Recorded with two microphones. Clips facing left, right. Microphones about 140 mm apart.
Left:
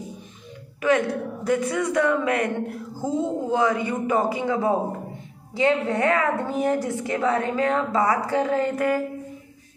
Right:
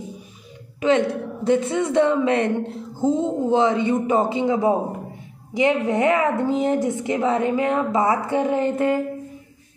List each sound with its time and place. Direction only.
0.7 s speech: 25° right (ahead or behind)